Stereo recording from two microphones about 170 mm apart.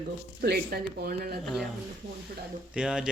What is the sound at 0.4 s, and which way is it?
Speech, 70° right (ahead or behind).